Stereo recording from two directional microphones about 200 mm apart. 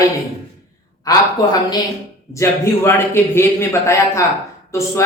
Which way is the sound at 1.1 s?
20° left (ahead or behind).